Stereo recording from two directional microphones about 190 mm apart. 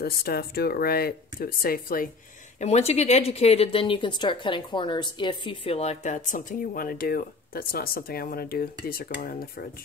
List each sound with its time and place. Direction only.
0.0 s speech: 55° left (ahead or behind)
2.6 s speech: 35° left (ahead or behind)